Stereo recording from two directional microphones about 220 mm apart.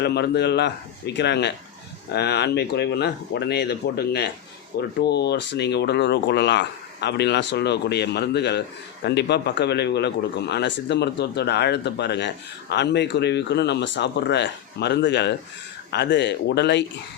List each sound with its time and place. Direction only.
0.0 s speech: 50° left (ahead or behind)